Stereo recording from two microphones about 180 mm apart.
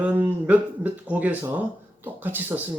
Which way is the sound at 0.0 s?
10° right (ahead or behind).